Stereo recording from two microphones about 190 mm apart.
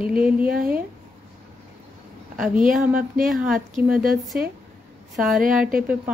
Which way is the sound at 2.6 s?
5° right (ahead or behind).